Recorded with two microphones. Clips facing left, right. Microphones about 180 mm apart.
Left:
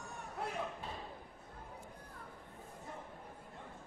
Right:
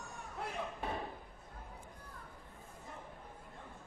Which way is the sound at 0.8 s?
65° right (ahead or behind).